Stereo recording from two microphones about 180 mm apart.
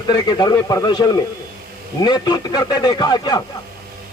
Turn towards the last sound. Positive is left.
turn(degrees=20)  # may be behind; listen again after turning